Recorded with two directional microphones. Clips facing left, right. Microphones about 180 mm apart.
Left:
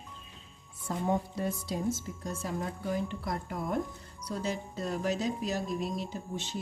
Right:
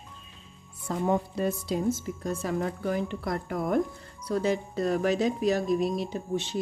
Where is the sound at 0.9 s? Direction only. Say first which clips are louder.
Right 4 dB; 75° right (ahead or behind).